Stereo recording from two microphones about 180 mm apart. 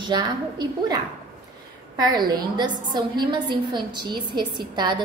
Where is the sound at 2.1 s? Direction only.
20° right (ahead or behind).